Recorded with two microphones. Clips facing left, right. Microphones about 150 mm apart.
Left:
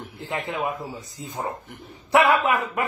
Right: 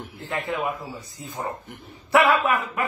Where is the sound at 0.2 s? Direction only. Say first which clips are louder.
Even; 20° left (ahead or behind).